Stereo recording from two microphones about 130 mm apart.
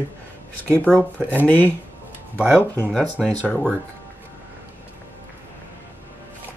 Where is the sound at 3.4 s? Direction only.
10° left (ahead or behind).